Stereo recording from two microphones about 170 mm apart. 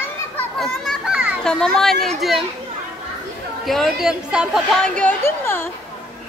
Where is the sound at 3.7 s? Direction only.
Centre (ahead or behind).